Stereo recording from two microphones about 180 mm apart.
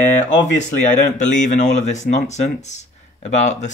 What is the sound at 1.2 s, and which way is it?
Speech, 45° left (ahead or behind).